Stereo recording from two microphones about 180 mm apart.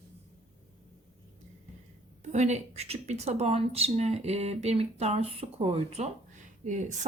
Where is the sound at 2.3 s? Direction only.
40° right (ahead or behind).